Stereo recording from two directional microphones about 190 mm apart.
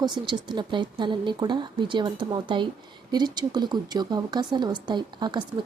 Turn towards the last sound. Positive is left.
turn(degrees=-25)  # may be behind; listen again after turning